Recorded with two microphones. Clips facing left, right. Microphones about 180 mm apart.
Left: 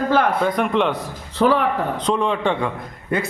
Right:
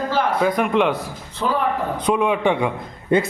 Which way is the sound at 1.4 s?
70° left (ahead or behind).